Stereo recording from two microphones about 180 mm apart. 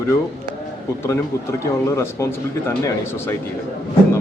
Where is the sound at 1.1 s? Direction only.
15° left (ahead or behind).